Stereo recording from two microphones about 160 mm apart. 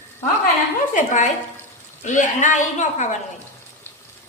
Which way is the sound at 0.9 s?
50° left (ahead or behind).